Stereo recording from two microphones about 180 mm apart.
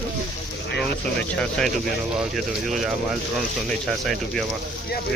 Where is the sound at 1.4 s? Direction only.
Centre (ahead or behind).